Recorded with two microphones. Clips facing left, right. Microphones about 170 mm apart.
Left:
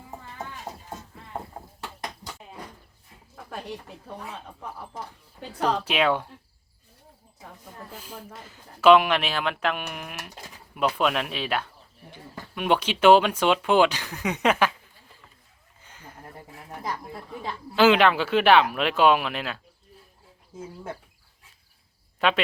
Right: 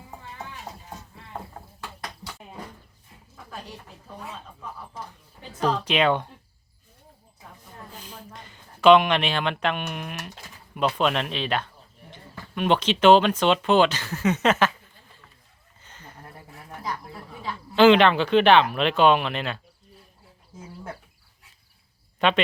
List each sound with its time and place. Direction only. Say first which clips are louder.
1.8 s a sound: left 1 dB; 20° left (ahead or behind)
5.8 s speech: right 1 dB; 5° left (ahead or behind)
8.0 s speech: left 2 dB; 5° left (ahead or behind)
15.8 s a sound: even; 10° left (ahead or behind)
17.7 s speech: right 3 dB; 5° left (ahead or behind)
22.2 s speech: right 1 dB; 5° left (ahead or behind)